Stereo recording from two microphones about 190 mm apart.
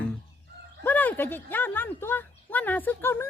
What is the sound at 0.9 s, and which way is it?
A woman's voice, 10° left (ahead or behind).